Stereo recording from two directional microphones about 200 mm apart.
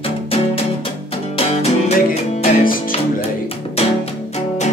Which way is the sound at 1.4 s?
30° left (ahead or behind).